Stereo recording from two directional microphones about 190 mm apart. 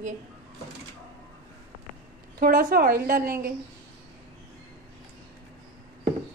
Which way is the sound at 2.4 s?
50° right (ahead or behind).